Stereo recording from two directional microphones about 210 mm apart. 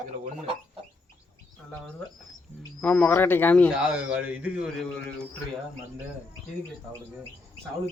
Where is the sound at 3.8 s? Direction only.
5° right (ahead or behind).